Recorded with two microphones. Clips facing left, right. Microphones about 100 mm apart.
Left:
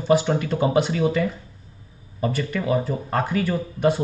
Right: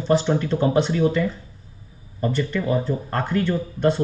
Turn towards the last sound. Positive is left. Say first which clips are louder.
# even
turn(degrees=10)  # may be behind; listen again after turning